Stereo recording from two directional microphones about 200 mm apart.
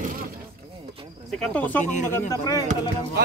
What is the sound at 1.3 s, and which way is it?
Speech, 5° left (ahead or behind).